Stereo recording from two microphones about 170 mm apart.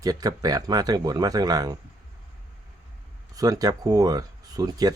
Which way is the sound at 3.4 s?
20° right (ahead or behind).